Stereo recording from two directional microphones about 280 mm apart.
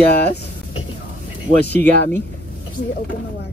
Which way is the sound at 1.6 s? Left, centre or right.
Left.